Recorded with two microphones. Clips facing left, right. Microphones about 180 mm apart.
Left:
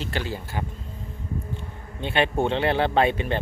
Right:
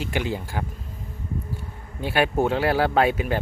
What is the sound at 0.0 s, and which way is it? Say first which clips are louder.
Speech: right 3 dB; 15° right (ahead or behind).